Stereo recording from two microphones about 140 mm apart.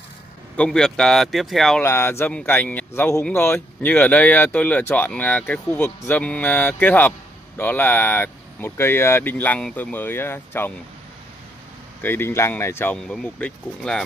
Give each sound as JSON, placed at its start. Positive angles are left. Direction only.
{"t": 0.6, "sound": "speech", "side_deg": 5}
{"t": 1.8, "sound": "speech", "side_deg": 15}
{"t": 12.0, "sound": "speech", "side_deg": 15}
{"t": 12.9, "sound": "speech", "side_deg": 5}